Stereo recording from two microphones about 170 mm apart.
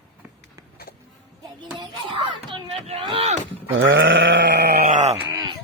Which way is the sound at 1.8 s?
30° right (ahead or behind).